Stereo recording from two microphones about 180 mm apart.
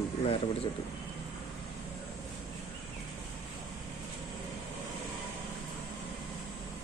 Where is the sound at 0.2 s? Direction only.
30° left (ahead or behind).